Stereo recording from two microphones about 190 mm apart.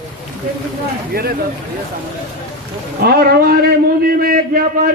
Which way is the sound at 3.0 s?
55° right (ahead or behind).